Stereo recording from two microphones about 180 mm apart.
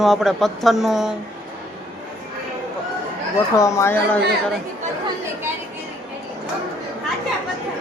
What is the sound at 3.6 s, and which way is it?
Speech, 20° left (ahead or behind).